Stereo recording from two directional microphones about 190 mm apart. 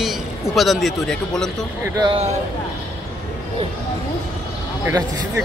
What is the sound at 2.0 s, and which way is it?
Speech, 30° right (ahead or behind).